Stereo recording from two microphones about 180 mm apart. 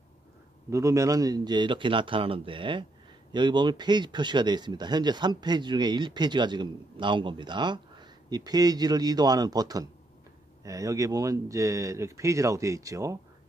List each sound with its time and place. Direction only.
0.7 s speech: 15° right (ahead or behind)